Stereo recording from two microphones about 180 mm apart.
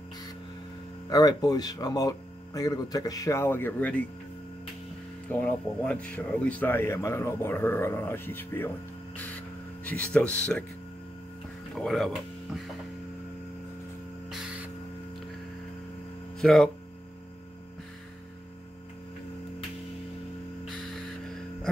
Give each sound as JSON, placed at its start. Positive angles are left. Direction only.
{"t": 1.0, "sound": "speech", "side_deg": 20}
{"t": 5.3, "sound": "speech", "side_deg": 10}
{"t": 11.7, "sound": "speech", "side_deg": 0}
{"t": 14.3, "sound": "music", "side_deg": -5}
{"t": 16.3, "sound": "speech", "side_deg": 0}